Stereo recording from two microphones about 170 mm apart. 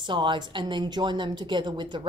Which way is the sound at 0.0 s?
30° right (ahead or behind).